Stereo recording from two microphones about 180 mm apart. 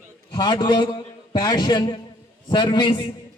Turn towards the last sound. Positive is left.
turn(degrees=25)  # may be behind; listen again after turning